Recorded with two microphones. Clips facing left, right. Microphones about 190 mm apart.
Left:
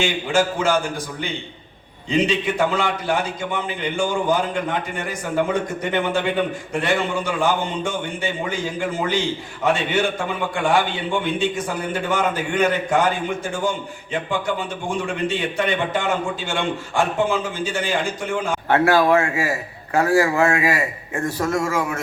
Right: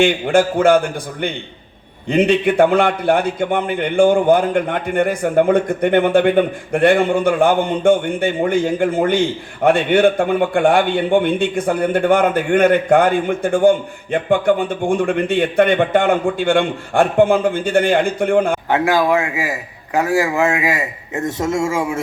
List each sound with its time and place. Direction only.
0.0 s a man's voice: 55° right (ahead or behind)
18.7 s a man's voice: 15° right (ahead or behind)